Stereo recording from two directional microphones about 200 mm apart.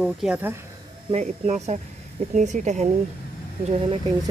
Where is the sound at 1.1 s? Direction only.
35° right (ahead or behind).